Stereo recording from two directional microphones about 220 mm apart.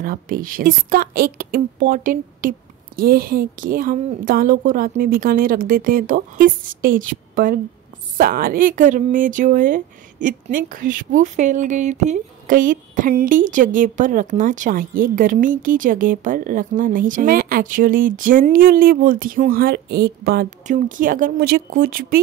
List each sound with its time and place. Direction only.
0.0 s speech: 40° right (ahead or behind)